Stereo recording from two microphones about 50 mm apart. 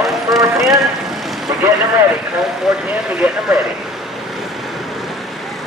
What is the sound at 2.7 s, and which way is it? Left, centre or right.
Speech, centre.